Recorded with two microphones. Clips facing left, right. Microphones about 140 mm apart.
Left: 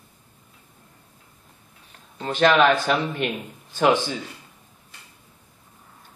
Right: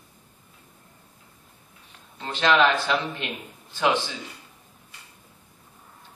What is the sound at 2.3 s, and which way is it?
Speech, 50° left (ahead or behind).